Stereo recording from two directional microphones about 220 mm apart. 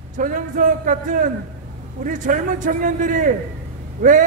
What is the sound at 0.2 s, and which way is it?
A man's voice, 35° right (ahead or behind).